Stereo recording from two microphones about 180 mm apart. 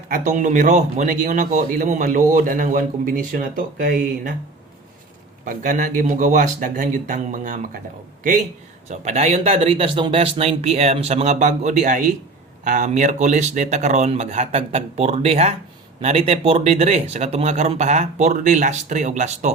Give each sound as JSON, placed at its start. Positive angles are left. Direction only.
{"t": 0.1, "sound": "a man's voice", "side_deg": -45}
{"t": 5.5, "sound": "a man's voice", "side_deg": -50}
{"t": 8.9, "sound": "speech", "side_deg": -40}